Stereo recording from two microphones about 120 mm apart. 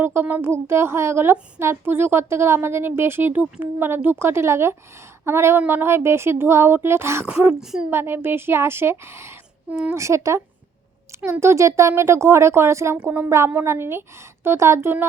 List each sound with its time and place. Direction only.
0.0 s a woman's voice: 20° right (ahead or behind)
7.6 s speech: 5° right (ahead or behind)
7.9 s a woman's voice: 20° right (ahead or behind)